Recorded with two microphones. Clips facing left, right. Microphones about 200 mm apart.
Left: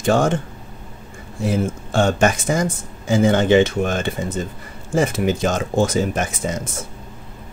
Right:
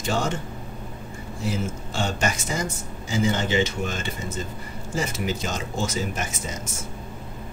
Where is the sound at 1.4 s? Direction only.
55° left (ahead or behind).